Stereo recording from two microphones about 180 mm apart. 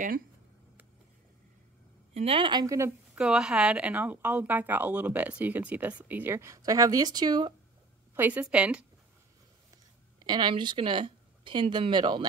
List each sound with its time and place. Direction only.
2.1 s a woman's voice: 30° right (ahead or behind)
3.2 s a woman's voice: 5° right (ahead or behind); by 7.5 s 25° right (ahead or behind)
8.1 s a woman's voice: 10° right (ahead or behind)
10.1 s speech: 25° right (ahead or behind)